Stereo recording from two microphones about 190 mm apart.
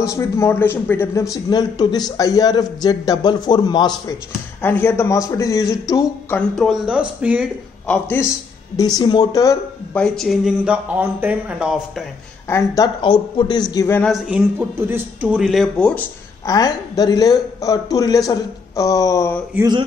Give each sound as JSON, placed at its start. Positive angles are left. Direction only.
{"t": 0.0, "sound": "a man's voice", "side_deg": 15}
{"t": 6.5, "sound": "speech", "side_deg": 0}
{"t": 7.8, "sound": "speech", "side_deg": 10}
{"t": 8.7, "sound": "a man's voice", "side_deg": 20}
{"t": 9.9, "sound": "speech", "side_deg": 0}
{"t": 12.4, "sound": "a man's voice", "side_deg": 15}
{"t": 14.1, "sound": "speech", "side_deg": -5}
{"t": 16.5, "sound": "a man's voice", "side_deg": 20}